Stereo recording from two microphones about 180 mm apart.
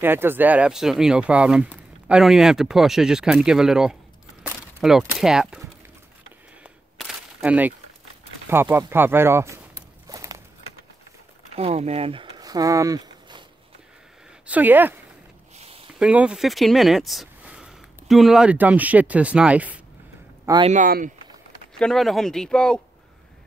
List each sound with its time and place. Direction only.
0.0 s speech: 10° right (ahead or behind)
7.0 s a sound: 5° right (ahead or behind)
8.5 s speech: 10° right (ahead or behind)
10.0 s a sound: 20° right (ahead or behind)
11.5 s speech: 35° right (ahead or behind)
14.4 s speech: 10° right (ahead or behind)
15.5 s a sound: 35° right (ahead or behind)
16.0 s speech: 5° right (ahead or behind)
20.6 s speech: 45° right (ahead or behind)
21.7 s speech: 5° left (ahead or behind)